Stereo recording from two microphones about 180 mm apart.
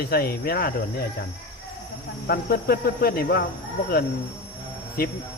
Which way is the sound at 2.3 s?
55° left (ahead or behind).